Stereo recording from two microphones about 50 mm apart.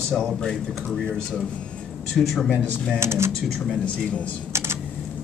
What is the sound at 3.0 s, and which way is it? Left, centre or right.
Speech, right.